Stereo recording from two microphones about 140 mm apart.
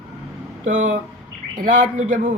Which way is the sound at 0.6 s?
65° right (ahead or behind).